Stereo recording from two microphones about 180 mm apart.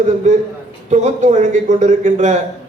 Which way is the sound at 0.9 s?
40° right (ahead or behind).